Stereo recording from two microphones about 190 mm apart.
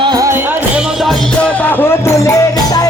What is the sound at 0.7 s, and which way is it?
Music, centre (ahead or behind).